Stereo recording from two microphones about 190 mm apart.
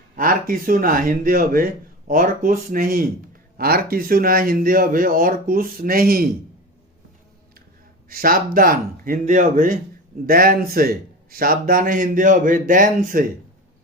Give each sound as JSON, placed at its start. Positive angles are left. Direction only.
{"t": 0.2, "sound": "a man's voice", "side_deg": -45}
{"t": 8.1, "sound": "a man's voice", "side_deg": -50}